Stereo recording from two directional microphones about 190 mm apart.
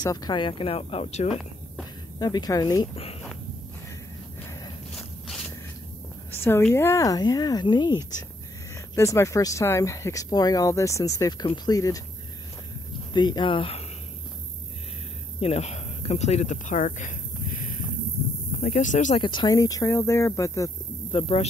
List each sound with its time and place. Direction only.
0.0 s speech: 20° left (ahead or behind)
2.1 s speech: 20° left (ahead or behind)
4.4 s walk: 15° left (ahead or behind)
4.9 s a sound: centre (ahead or behind)
6.3 s speech: 10° left (ahead or behind)
13.1 s speech: 25° left (ahead or behind)
15.4 s speech: 35° left (ahead or behind)
19.2 s speech: 25° left (ahead or behind)
21.1 s speech: 30° left (ahead or behind)